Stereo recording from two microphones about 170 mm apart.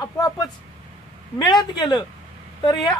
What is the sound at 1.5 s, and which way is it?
Speech, 25° left (ahead or behind).